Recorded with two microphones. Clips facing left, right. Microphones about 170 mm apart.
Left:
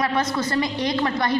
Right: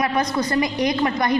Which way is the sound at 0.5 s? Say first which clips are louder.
Right 4 dB; 15° right (ahead or behind).